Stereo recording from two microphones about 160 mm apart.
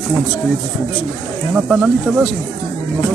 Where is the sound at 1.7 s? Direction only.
Centre (ahead or behind).